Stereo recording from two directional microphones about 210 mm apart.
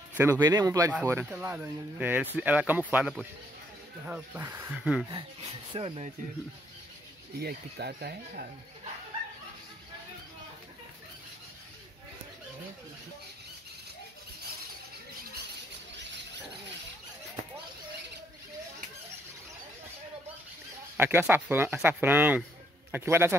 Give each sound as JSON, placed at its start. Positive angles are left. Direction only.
{"t": 0.2, "sound": "speech", "side_deg": -15}
{"t": 5.7, "sound": "speech", "side_deg": -25}
{"t": 7.3, "sound": "speech", "side_deg": -50}
{"t": 21.0, "sound": "a man's voice", "side_deg": -10}